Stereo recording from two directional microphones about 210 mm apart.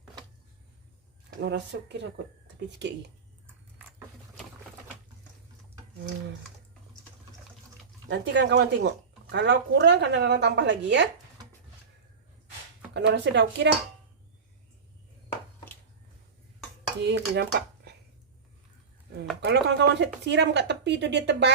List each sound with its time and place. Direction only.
1.4 s speech: 55° right (ahead or behind)
8.0 s speech: 55° right (ahead or behind)
12.9 s speech: 55° right (ahead or behind)
17.0 s speech: 55° right (ahead or behind)
19.5 s speech: 55° right (ahead or behind)